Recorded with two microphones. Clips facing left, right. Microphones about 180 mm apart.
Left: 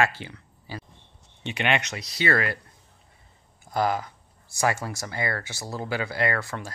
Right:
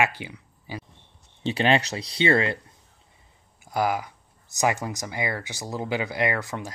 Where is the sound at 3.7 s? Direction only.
10° right (ahead or behind).